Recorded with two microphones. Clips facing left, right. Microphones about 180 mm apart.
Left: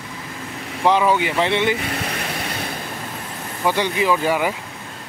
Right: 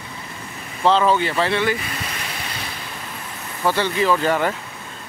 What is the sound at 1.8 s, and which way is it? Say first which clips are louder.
Vehicle: left 5 dB; 60° left (ahead or behind).